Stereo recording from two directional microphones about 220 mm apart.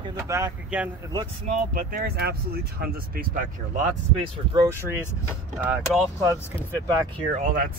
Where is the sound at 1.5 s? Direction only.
40° right (ahead or behind).